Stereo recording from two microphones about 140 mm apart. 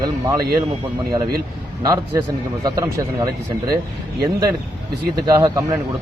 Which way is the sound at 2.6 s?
25° right (ahead or behind).